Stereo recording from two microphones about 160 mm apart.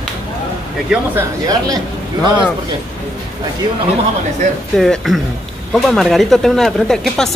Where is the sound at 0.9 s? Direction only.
10° right (ahead or behind).